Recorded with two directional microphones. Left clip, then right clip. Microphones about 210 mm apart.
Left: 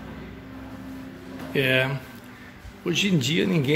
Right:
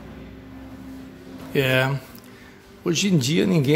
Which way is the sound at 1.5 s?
30° right (ahead or behind).